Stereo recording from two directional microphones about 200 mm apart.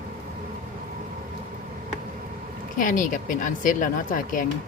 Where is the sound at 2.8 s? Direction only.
40° left (ahead or behind).